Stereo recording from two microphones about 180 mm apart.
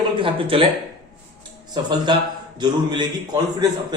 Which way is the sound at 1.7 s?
25° right (ahead or behind).